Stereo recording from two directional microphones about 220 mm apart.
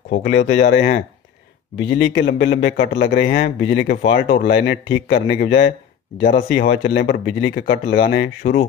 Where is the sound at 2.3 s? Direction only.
50° left (ahead or behind).